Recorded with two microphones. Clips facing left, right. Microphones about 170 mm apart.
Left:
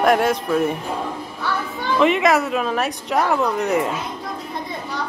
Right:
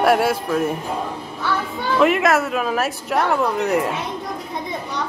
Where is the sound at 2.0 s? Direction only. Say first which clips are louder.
Even; 5° right (ahead or behind).